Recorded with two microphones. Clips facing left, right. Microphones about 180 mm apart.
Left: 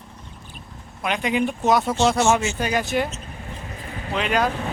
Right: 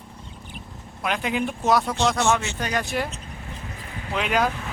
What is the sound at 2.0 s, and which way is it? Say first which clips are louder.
Speech: left 3 dB; 15° left (ahead or behind).